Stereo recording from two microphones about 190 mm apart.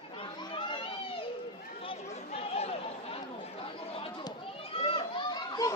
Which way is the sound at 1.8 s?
30° left (ahead or behind).